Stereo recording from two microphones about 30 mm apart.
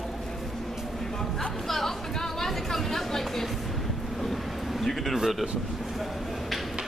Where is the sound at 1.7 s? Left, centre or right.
Centre.